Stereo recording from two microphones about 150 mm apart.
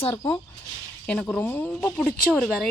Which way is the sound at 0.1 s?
20° left (ahead or behind).